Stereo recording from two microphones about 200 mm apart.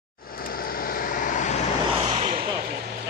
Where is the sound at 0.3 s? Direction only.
45° left (ahead or behind).